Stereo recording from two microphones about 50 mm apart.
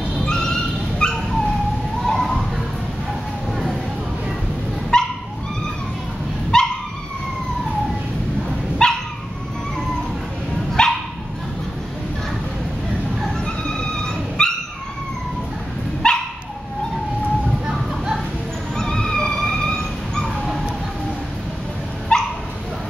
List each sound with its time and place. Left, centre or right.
0.2 s dog: centre
2.0 s children playing: centre
4.9 s dog: centre
6.5 s dog: centre
8.8 s dog: centre
10.8 s dog: centre
13.2 s dog: centre
16.0 s dog: centre
18.8 s a sound: centre
22.1 s dog: centre